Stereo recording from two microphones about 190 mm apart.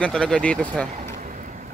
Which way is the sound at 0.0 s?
5° left (ahead or behind).